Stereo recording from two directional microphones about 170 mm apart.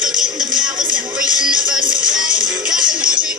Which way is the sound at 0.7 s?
50° right (ahead or behind).